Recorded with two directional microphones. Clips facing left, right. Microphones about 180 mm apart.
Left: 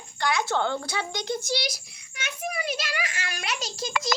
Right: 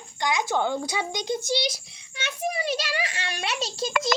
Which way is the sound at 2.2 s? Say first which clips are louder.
Right 3 dB; 30° right (ahead or behind).